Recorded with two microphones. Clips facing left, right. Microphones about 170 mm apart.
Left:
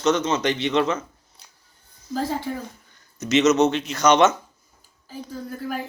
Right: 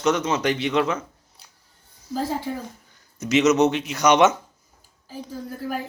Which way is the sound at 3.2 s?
10° right (ahead or behind).